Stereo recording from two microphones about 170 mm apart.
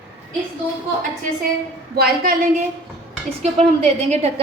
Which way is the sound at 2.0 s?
65° right (ahead or behind).